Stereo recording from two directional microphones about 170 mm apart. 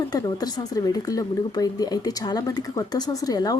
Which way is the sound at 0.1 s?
20° left (ahead or behind).